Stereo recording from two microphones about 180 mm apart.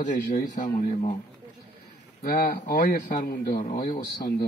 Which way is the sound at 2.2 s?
55° left (ahead or behind).